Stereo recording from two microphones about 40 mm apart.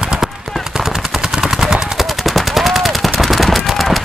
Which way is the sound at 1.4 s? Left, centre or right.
Centre.